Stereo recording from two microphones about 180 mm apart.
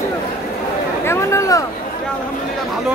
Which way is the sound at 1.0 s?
15° left (ahead or behind).